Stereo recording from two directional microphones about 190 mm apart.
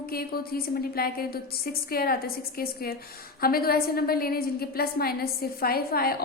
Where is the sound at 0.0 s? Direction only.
50° left (ahead or behind).